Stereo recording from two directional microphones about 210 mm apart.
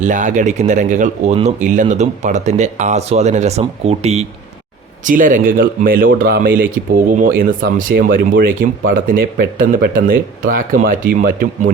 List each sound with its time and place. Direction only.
0.0 s speech: 35° right (ahead or behind)